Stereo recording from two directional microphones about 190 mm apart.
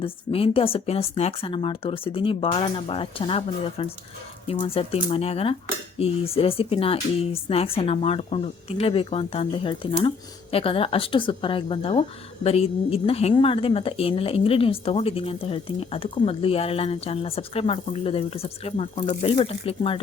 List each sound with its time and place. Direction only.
0.0 s speech: 30° left (ahead or behind)